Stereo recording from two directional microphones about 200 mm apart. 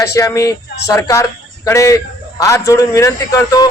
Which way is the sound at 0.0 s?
15° left (ahead or behind).